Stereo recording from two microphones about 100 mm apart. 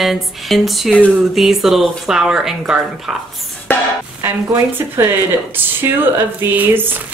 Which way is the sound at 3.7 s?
20° left (ahead or behind).